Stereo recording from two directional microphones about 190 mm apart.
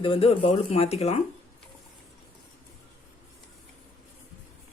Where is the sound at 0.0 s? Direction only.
30° left (ahead or behind).